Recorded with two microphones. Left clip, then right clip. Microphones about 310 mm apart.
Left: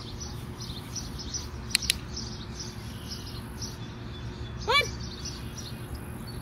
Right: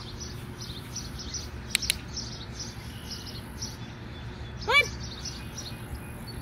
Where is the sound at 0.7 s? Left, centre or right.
Left.